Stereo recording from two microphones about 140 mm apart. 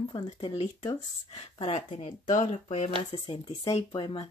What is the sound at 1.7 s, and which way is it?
Speech, 55° left (ahead or behind).